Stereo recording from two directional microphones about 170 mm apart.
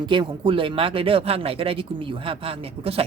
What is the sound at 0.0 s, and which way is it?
Speech, 30° right (ahead or behind).